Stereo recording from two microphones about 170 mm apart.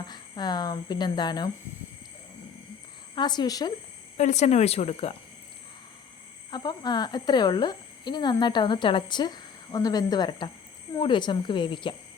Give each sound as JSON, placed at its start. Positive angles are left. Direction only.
{"t": 0.1, "sound": "speech", "side_deg": 25}
{"t": 3.2, "sound": "speech", "side_deg": 25}
{"t": 4.2, "sound": "speech", "side_deg": 45}
{"t": 6.5, "sound": "speech", "side_deg": 25}